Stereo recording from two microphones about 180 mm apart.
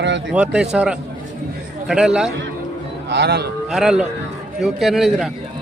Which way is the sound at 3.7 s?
5° right (ahead or behind).